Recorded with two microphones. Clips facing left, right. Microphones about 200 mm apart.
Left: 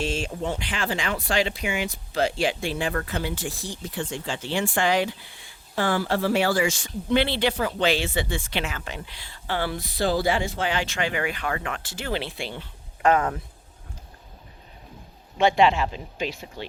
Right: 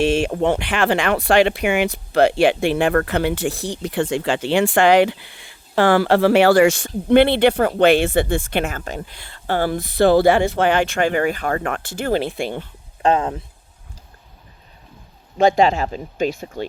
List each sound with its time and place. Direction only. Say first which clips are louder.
0.0 s speech: right 10 dB; 70° right (ahead or behind); by 12.6 s 50° right (ahead or behind)
13.0 s speech: right 3 dB; 25° right (ahead or behind)
15.4 s speech: right 4 dB; 40° right (ahead or behind)